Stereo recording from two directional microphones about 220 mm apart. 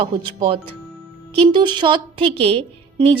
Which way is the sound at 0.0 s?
25° right (ahead or behind).